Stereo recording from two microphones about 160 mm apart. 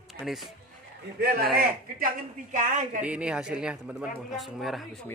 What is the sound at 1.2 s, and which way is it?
Speech, 75° right (ahead or behind).